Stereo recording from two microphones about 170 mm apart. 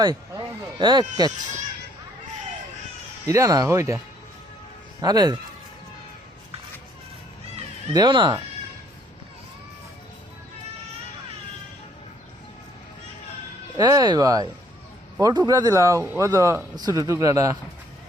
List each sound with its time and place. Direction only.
0.0 s a sound: 25° right (ahead or behind)
3.2 s speech: 20° right (ahead or behind)
7.9 s speech: 25° right (ahead or behind)
13.7 s speech: 25° right (ahead or behind)